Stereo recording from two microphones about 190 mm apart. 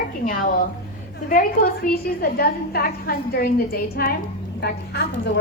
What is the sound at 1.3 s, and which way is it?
A woman's voice, 45° left (ahead or behind).